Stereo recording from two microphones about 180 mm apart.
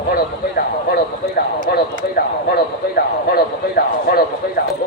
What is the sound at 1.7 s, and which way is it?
Speech, 65° left (ahead or behind).